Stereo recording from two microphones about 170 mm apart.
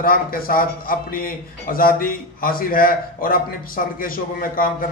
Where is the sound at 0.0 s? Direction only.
60° left (ahead or behind).